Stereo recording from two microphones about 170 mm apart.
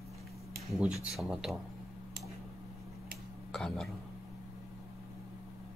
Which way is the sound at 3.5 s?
5° left (ahead or behind).